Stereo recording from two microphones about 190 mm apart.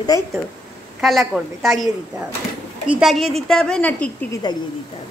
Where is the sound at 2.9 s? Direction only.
Centre (ahead or behind).